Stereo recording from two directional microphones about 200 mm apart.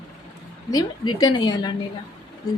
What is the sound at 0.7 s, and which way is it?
A woman's voice, 20° left (ahead or behind).